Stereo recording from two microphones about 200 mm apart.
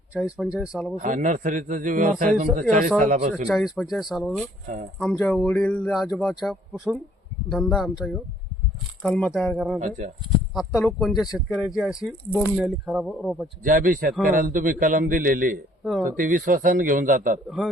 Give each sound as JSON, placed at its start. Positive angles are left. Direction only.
{"t": 0.2, "sound": "speech", "side_deg": -5}
{"t": 0.9, "sound": "a man's voice", "side_deg": -40}
{"t": 3.3, "sound": "speech", "side_deg": 0}
{"t": 13.7, "sound": "a man's voice", "side_deg": -45}
{"t": 15.8, "sound": "speech", "side_deg": 0}
{"t": 16.0, "sound": "a man's voice", "side_deg": -45}